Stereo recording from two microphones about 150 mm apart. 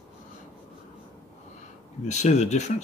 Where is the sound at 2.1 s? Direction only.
50° left (ahead or behind).